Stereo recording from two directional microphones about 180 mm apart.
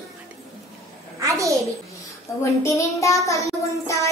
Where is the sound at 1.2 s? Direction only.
15° right (ahead or behind).